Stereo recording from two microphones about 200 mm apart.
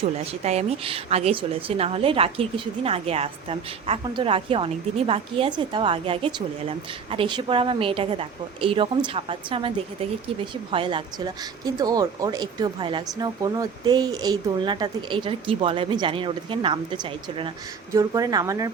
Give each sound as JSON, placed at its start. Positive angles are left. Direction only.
{"t": 0.4, "sound": "a woman's voice", "side_deg": -30}